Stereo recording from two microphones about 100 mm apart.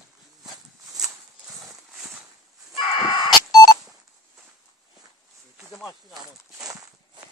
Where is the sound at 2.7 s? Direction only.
50° left (ahead or behind).